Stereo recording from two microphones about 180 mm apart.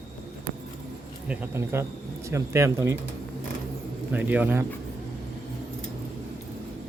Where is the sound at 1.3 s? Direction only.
10° right (ahead or behind).